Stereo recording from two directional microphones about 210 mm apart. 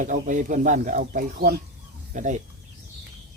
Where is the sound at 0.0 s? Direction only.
40° right (ahead or behind).